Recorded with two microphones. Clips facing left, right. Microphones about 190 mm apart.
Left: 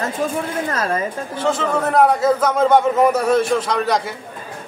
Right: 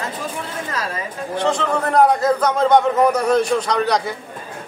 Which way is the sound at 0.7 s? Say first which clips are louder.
Left 4 dB; 50° left (ahead or behind).